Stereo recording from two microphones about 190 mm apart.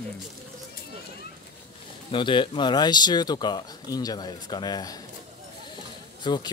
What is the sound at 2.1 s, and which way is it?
Speech, 25° left (ahead or behind).